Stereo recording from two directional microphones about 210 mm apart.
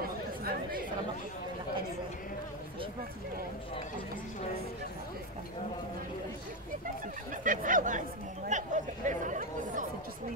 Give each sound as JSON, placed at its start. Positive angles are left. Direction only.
{"t": 0.0, "sound": "chatter", "side_deg": -45}
{"t": 7.4, "sound": "speech", "side_deg": -40}